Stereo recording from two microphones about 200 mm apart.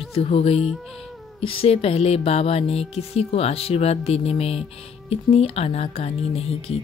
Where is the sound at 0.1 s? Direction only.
30° left (ahead or behind).